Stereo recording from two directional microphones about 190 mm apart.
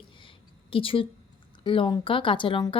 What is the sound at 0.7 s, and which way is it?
Speech, 30° left (ahead or behind).